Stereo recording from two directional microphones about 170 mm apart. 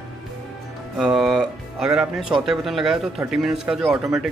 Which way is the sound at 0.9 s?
Centre (ahead or behind).